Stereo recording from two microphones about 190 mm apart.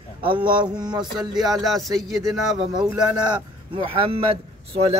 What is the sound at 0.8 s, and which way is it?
Speech, 20° right (ahead or behind).